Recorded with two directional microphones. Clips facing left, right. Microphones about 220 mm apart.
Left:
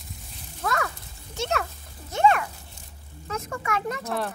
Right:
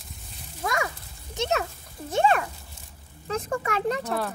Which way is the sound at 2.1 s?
30° right (ahead or behind).